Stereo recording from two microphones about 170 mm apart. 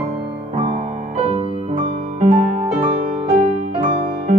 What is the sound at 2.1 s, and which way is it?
Music, 45° right (ahead or behind).